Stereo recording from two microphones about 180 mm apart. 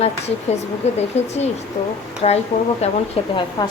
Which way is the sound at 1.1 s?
35° left (ahead or behind).